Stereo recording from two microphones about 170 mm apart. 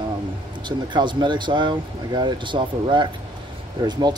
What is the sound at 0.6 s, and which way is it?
Speech, 25° right (ahead or behind).